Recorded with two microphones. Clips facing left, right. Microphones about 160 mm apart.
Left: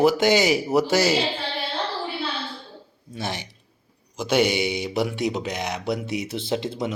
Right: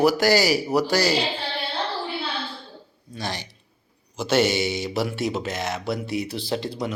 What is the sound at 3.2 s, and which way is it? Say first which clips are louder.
A man's voice: left 1 dB; 20° left (ahead or behind).